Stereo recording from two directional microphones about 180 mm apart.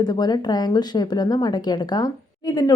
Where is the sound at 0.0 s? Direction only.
25° left (ahead or behind).